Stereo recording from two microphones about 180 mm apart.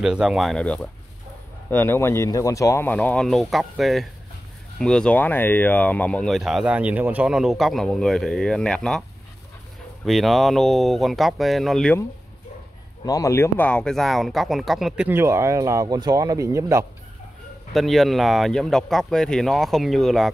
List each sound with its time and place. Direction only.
0.0 s speech: 5° right (ahead or behind)
10.0 s speech: centre (ahead or behind)
13.0 s speech: 20° left (ahead or behind); by 15.0 s centre (ahead or behind)
15.0 s speech: 15° right (ahead or behind)
17.7 s speech: centre (ahead or behind)